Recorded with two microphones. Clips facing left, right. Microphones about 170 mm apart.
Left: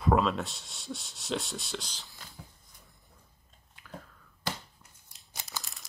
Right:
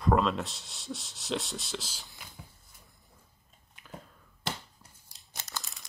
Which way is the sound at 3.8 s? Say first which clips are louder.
Left 1 dB; 20° right (ahead or behind).